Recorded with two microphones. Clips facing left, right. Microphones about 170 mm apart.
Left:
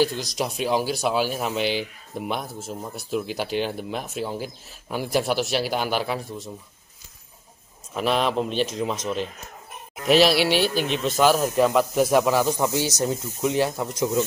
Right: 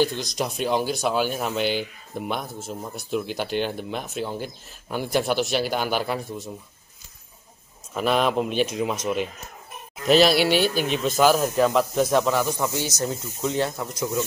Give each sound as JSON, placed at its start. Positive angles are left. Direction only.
{"t": 0.0, "sound": "speech", "side_deg": 5}
{"t": 7.9, "sound": "speech", "side_deg": 0}
{"t": 10.0, "sound": "speech", "side_deg": 5}
{"t": 10.5, "sound": "speech", "side_deg": -50}
{"t": 10.8, "sound": "speech", "side_deg": 0}